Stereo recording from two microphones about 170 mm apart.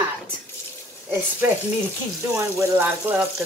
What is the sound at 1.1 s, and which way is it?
Speech, 15° right (ahead or behind).